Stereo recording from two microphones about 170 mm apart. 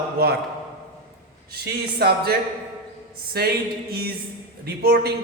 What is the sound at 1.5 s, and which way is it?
Speech, 65° right (ahead or behind).